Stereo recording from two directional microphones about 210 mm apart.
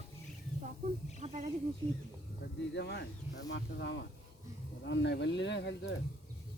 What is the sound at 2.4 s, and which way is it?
Speech, 55° left (ahead or behind).